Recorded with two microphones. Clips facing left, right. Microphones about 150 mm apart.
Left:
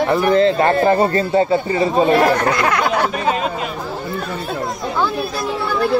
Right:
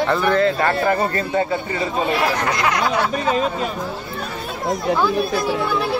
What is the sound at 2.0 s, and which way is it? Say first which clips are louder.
Speech: left 6 dB; 50° left (ahead or behind).